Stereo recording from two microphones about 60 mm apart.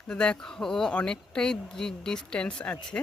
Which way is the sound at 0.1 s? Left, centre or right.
Centre.